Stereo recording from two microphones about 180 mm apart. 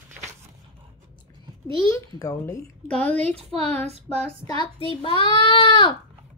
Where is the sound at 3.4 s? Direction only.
35° right (ahead or behind).